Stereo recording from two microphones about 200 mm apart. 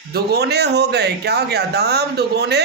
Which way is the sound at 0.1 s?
50° right (ahead or behind).